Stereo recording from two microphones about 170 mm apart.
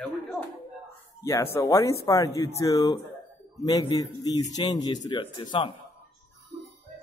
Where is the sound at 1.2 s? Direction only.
15° left (ahead or behind).